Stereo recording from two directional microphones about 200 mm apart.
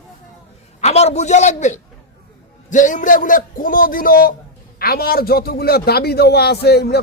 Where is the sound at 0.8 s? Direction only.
35° left (ahead or behind).